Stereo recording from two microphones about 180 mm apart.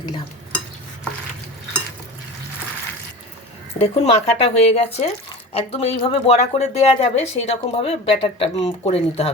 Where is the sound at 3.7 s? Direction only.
35° left (ahead or behind).